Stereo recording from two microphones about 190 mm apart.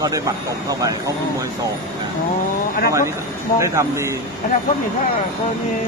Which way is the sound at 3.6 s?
15° right (ahead or behind).